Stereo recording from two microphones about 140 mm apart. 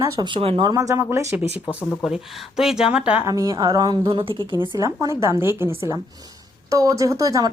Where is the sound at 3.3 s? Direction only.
25° right (ahead or behind).